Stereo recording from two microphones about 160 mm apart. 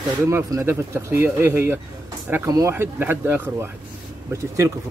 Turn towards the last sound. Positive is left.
turn(degrees=-20)  # may be behind; listen again after turning